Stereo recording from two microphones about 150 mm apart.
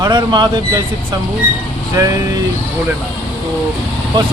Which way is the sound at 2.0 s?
20° right (ahead or behind).